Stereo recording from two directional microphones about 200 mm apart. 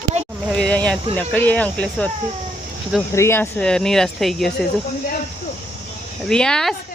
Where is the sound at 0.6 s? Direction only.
5° left (ahead or behind).